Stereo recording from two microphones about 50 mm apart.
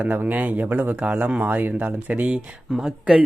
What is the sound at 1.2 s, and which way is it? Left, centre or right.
Speech, right.